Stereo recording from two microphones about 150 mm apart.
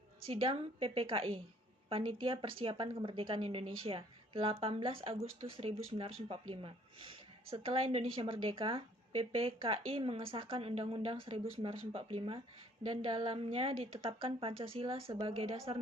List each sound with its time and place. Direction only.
0.3 s a woman's voice: 40° right (ahead or behind)